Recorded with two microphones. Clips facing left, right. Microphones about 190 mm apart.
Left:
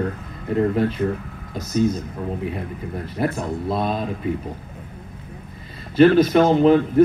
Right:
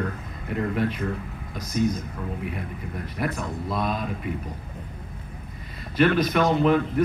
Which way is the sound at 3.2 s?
30° left (ahead or behind).